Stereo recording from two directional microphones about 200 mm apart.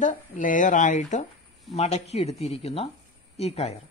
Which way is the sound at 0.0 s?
40° left (ahead or behind).